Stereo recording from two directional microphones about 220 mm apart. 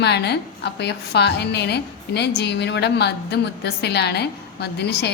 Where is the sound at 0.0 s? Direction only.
50° left (ahead or behind).